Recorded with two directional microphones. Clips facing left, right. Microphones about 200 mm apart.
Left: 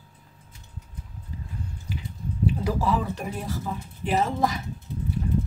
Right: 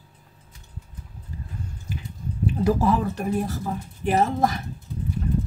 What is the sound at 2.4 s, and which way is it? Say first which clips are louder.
Speech: right 4 dB; 45° right (ahead or behind).